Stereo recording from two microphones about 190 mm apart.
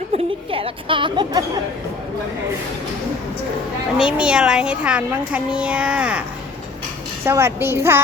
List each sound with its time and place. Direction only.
0.1 s speech: 30° right (ahead or behind)
3.9 s a child's voice: 5° right (ahead or behind)
7.3 s a child's voice: 10° right (ahead or behind)